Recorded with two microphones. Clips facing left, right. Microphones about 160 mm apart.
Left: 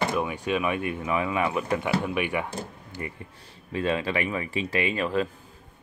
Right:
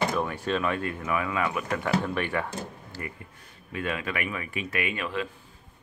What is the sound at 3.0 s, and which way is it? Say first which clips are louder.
Speech: left 3 dB; 25° left (ahead or behind).